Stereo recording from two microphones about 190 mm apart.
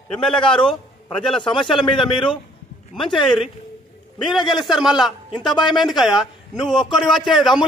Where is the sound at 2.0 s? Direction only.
Centre (ahead or behind).